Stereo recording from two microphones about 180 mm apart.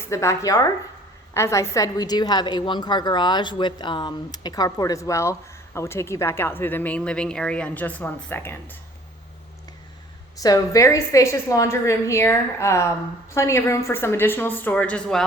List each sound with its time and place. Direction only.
0.0 s a woman's voice: 15° left (ahead or behind)
10.4 s a woman's voice: 20° left (ahead or behind)